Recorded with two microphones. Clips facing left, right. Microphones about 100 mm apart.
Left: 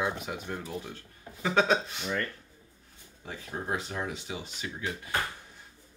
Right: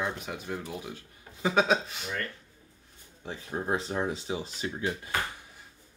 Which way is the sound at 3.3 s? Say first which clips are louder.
Right 3 dB; 25° right (ahead or behind).